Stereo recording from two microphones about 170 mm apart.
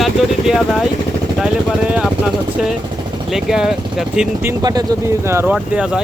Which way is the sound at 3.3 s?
Centre (ahead or behind).